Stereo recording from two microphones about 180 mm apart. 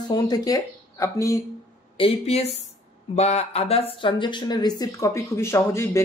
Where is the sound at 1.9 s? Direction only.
30° left (ahead or behind).